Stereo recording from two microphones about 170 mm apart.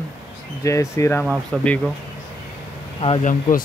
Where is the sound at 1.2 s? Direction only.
5° left (ahead or behind).